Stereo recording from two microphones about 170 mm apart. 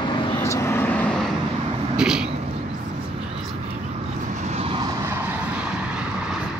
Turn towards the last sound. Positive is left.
turn(degrees=-35)  # may be behind; listen again after turning